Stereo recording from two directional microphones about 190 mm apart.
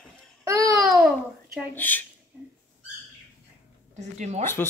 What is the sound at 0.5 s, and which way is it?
Babbling, 15° right (ahead or behind).